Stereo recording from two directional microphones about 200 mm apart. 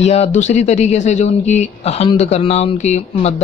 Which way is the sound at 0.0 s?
35° left (ahead or behind).